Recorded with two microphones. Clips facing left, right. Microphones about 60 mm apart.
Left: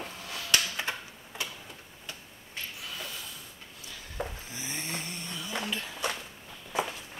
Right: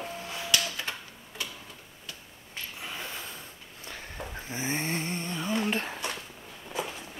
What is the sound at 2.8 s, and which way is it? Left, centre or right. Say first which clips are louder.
Snort: right 2 dB; right.